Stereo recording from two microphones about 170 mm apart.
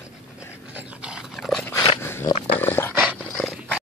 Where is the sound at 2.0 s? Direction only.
15° left (ahead or behind).